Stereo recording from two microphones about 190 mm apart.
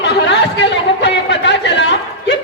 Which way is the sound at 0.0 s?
65° left (ahead or behind).